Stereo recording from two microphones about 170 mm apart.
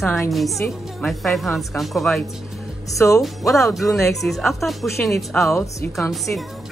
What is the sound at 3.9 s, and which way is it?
Speech, centre (ahead or behind).